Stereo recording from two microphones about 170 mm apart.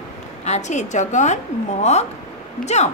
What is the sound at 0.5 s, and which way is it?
A woman's voice, 45° left (ahead or behind).